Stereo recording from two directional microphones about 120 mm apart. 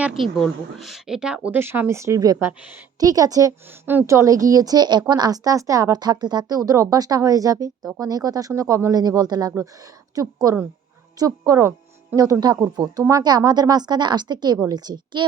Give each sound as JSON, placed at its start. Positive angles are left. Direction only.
{"t": 0.0, "sound": "a woman's voice", "side_deg": 0}